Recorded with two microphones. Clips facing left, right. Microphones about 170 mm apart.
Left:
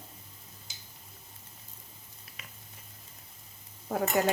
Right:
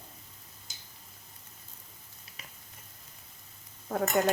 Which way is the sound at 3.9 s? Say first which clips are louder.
Even; 5° left (ahead or behind).